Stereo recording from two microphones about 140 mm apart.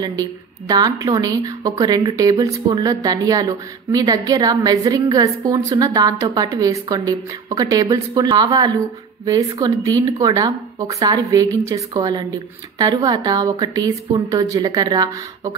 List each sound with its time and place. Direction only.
0.7 s a woman's voice: 25° right (ahead or behind)